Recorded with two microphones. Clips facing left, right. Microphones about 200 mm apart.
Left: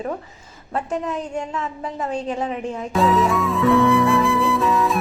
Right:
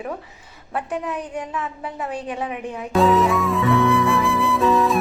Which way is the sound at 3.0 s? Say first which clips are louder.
Right 2 dB; centre (ahead or behind).